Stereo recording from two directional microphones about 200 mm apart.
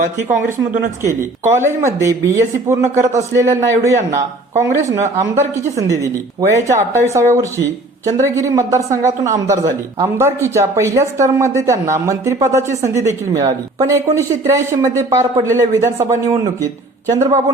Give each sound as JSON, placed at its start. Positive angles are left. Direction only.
{"t": 0.3, "sound": "speech", "side_deg": -40}
{"t": 1.0, "sound": "speech", "side_deg": -15}
{"t": 5.3, "sound": "speech", "side_deg": -35}
{"t": 6.5, "sound": "speech", "side_deg": -15}